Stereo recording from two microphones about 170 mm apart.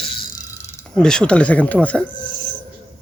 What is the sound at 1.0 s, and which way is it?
Speech, 5° left (ahead or behind).